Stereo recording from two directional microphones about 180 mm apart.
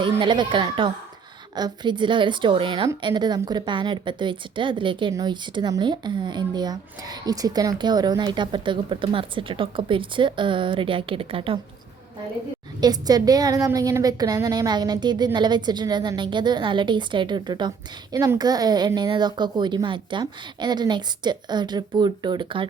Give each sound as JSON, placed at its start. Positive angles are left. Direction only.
{"t": 0.0, "sound": "a woman's voice", "side_deg": -25}
{"t": 12.8, "sound": "a woman's voice", "side_deg": -20}